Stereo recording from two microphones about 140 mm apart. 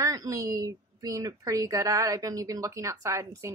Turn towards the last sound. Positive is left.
turn(degrees=-20)  # may be behind; listen again after turning